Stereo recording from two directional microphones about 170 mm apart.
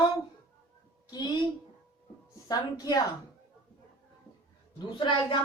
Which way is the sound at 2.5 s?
25° left (ahead or behind).